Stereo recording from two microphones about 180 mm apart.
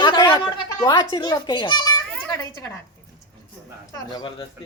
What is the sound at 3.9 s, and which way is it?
Speech, 25° left (ahead or behind).